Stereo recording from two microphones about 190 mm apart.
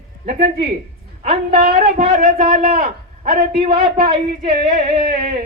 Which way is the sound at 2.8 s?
55° right (ahead or behind).